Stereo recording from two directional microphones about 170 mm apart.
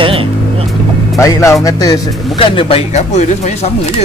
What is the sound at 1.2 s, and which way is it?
Speech, 20° left (ahead or behind).